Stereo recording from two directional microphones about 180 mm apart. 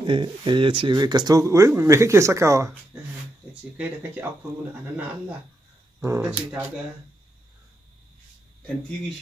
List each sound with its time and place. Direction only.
0.0 s speech: 25° right (ahead or behind); by 4.3 s 10° right (ahead or behind)
5.9 s speech: 15° right (ahead or behind)